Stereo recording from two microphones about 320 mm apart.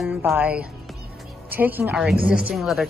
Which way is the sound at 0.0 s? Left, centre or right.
Centre.